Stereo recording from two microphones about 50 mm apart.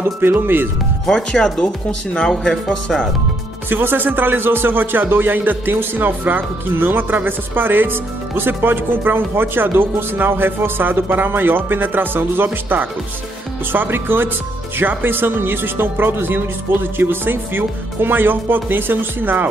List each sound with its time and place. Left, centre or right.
0.0 s a man's voice: right
1.0 s speech: centre
3.7 s a man's voice: right
13.7 s a man's voice: right